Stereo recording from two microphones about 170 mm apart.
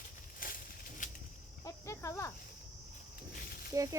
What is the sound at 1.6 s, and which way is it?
Cricket, 20° left (ahead or behind).